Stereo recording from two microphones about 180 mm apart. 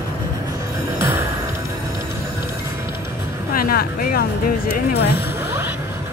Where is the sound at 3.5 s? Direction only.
55° left (ahead or behind).